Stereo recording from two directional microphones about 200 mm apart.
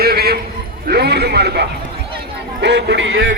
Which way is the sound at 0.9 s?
55° right (ahead or behind).